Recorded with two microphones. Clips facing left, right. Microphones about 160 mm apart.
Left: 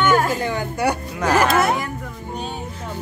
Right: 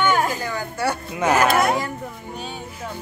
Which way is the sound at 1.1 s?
Centre (ahead or behind).